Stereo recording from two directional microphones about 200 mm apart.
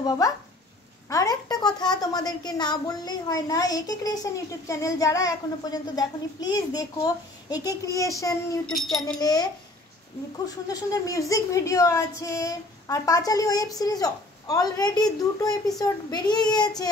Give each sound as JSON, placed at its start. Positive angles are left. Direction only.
{"t": 0.2, "sound": "a woman's voice", "side_deg": 20}
{"t": 8.6, "sound": "speech", "side_deg": 0}
{"t": 9.2, "sound": "a woman's voice", "side_deg": 20}